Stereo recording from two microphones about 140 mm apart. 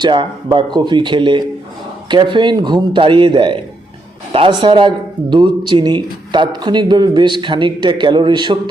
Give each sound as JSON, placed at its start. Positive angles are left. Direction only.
{"t": 0.0, "sound": "speech", "side_deg": -35}